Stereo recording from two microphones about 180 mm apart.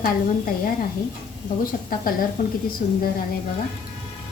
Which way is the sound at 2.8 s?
45° left (ahead or behind).